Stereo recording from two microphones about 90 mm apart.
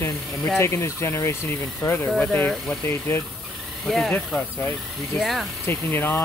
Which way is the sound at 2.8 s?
30° left (ahead or behind).